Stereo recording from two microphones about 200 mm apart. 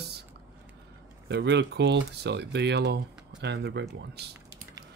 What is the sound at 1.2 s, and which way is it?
Speech, 60° right (ahead or behind).